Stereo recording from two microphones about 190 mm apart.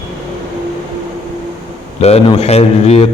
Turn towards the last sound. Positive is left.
turn(degrees=35)  # may be behind; listen again after turning